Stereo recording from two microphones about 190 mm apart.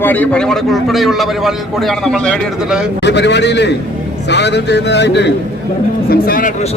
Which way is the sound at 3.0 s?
65° left (ahead or behind).